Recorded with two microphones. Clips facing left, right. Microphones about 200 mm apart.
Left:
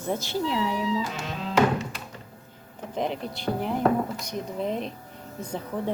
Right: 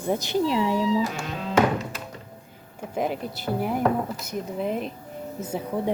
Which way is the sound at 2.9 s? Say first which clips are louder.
Right 2 dB; 5° right (ahead or behind).